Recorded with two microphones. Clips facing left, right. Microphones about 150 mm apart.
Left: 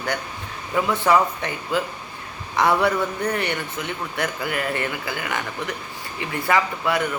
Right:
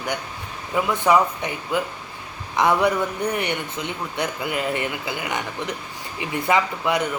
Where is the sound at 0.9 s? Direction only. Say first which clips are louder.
Right 1 dB; 15° right (ahead or behind).